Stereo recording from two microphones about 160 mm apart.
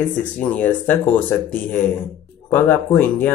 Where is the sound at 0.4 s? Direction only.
10° left (ahead or behind).